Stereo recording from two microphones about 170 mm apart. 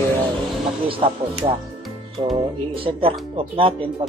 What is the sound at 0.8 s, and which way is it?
Speech, 30° right (ahead or behind).